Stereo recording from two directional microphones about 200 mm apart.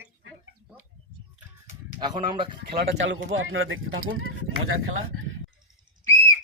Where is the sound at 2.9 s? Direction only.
75° right (ahead or behind); by 4.3 s 90° right.